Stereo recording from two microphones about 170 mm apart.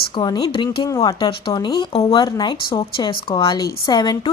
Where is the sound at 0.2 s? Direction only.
25° left (ahead or behind).